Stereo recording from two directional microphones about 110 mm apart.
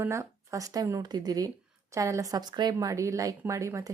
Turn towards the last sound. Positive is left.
turn(degrees=-30)  # may be behind; listen again after turning